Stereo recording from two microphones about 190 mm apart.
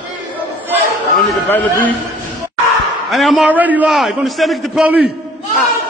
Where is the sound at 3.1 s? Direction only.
Centre (ahead or behind).